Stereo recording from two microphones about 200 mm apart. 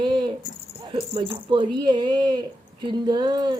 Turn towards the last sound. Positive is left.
turn(degrees=-20)  # may be behind; listen again after turning